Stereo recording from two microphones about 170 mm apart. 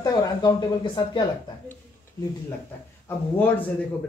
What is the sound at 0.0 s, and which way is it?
Speech, 20° left (ahead or behind).